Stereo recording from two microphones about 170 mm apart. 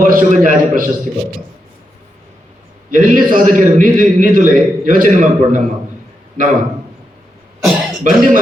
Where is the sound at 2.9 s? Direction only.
55° right (ahead or behind).